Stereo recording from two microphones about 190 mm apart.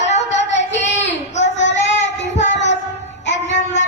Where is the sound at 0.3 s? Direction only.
70° left (ahead or behind).